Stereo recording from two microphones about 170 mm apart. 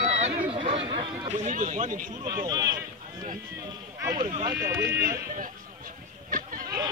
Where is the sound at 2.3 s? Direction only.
20° right (ahead or behind).